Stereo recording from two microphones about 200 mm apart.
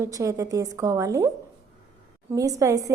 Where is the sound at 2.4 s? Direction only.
15° right (ahead or behind).